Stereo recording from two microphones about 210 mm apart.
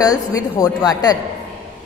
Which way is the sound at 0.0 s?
15° left (ahead or behind).